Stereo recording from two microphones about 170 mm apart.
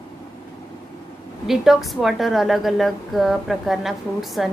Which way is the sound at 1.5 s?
Centre (ahead or behind).